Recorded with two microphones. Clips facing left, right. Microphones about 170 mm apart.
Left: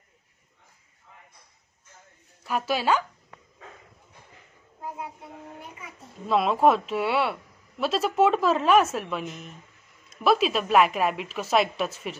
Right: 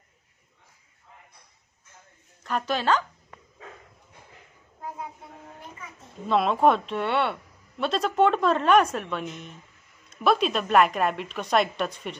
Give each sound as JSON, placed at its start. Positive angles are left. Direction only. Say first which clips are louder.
{"t": 2.4, "sound": "speech", "louder": "even", "side_deg": 10}
{"t": 5.8, "sound": "a child's voice", "louder": "right 1 dB", "side_deg": 5}